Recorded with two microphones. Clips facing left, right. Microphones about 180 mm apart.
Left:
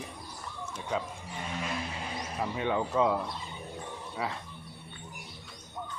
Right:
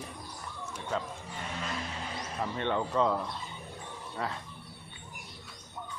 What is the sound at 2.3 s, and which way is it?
Speech, 5° left (ahead or behind).